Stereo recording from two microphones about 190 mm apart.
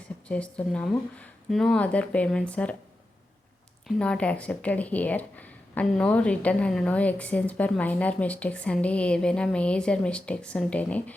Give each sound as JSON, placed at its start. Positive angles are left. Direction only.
{"t": 0.3, "sound": "speech", "side_deg": 5}
{"t": 3.8, "sound": "speech", "side_deg": 5}